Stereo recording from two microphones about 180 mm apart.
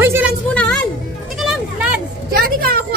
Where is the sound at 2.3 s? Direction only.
55° right (ahead or behind).